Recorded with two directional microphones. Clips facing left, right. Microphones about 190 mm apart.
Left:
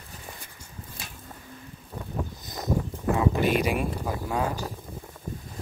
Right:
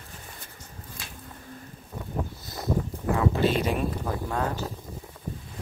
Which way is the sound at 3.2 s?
15° left (ahead or behind).